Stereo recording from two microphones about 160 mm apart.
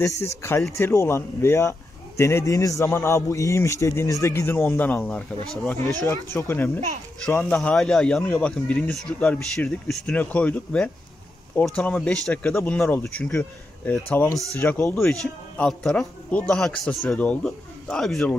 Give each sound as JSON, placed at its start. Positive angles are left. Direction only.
{"t": 0.2, "sound": "a man's voice", "side_deg": 15}